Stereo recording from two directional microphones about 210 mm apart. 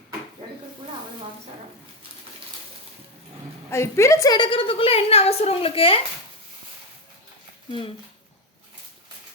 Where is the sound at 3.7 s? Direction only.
15° left (ahead or behind).